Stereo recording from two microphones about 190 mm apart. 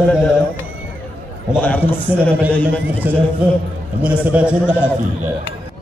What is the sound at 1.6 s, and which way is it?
Speech, 10° left (ahead or behind).